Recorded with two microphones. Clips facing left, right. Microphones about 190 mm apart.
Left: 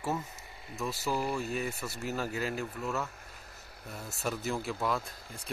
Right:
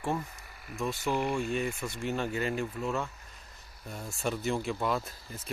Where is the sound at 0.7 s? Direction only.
5° left (ahead or behind).